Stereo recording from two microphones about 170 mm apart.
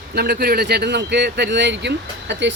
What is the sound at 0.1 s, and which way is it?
Speech, 70° right (ahead or behind).